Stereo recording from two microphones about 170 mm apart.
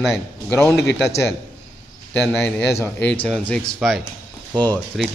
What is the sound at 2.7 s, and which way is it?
Speech, 15° left (ahead or behind).